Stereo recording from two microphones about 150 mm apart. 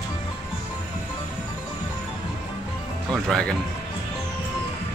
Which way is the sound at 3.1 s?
5° left (ahead or behind).